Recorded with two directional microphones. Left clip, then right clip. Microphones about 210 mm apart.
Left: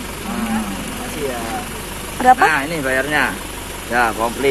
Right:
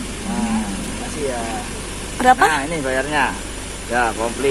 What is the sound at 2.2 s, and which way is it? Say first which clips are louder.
Speech: left 2 dB; centre (ahead or behind).